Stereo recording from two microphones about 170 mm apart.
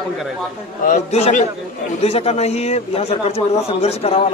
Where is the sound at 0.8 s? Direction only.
45° left (ahead or behind).